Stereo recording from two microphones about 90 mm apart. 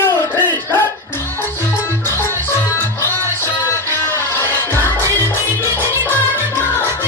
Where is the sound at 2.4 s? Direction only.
30° left (ahead or behind).